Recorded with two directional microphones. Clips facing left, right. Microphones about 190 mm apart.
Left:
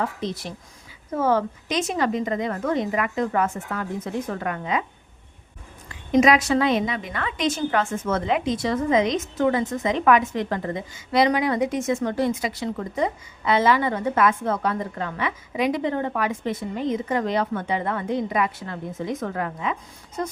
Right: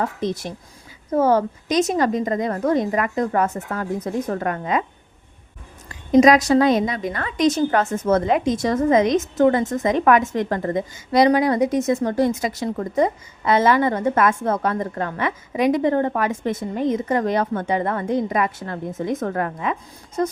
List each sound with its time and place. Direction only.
0.0 s a woman's voice: 45° right (ahead or behind)
5.9 s a woman's voice: 40° right (ahead or behind)